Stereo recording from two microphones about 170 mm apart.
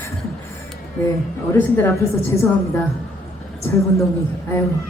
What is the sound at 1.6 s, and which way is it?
A woman's voice, 15° left (ahead or behind).